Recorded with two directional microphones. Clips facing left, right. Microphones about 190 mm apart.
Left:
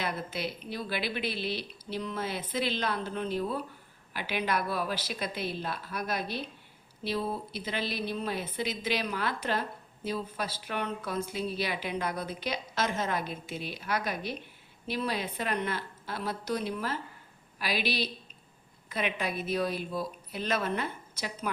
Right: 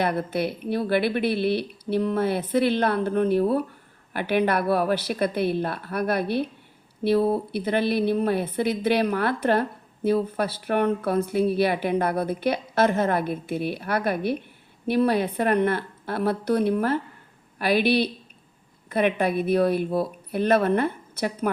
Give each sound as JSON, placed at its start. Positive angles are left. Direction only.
{"t": 0.0, "sound": "speech", "side_deg": -60}